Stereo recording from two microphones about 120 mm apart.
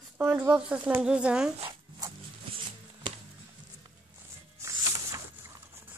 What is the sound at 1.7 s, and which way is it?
Zipper, 25° right (ahead or behind).